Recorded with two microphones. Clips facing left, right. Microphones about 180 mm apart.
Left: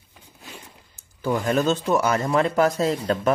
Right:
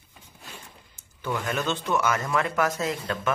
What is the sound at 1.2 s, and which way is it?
Speech, 35° left (ahead or behind).